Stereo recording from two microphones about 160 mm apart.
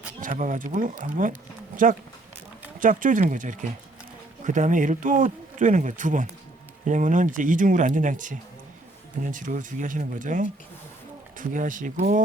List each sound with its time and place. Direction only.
0.2 s speech: 55° right (ahead or behind)